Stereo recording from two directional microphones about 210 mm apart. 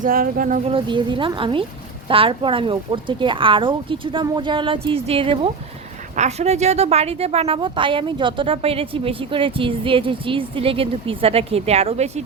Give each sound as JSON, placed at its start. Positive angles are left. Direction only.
{"t": 0.0, "sound": "speech", "side_deg": -40}
{"t": 0.6, "sound": "a woman's voice", "side_deg": -25}